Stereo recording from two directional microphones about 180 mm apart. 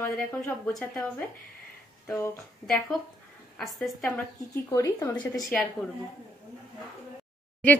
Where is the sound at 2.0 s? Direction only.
15° left (ahead or behind).